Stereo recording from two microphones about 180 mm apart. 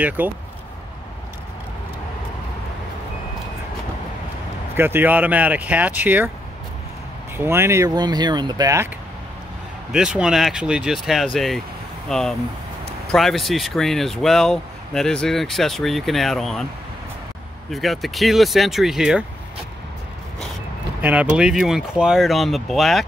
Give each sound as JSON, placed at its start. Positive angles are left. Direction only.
{"t": 0.2, "sound": "speech", "side_deg": -10}
{"t": 4.7, "sound": "speech", "side_deg": -10}
{"t": 7.3, "sound": "speech", "side_deg": -15}
{"t": 9.9, "sound": "speech", "side_deg": -5}
{"t": 17.6, "sound": "speech", "side_deg": 0}
{"t": 21.0, "sound": "speech", "side_deg": -10}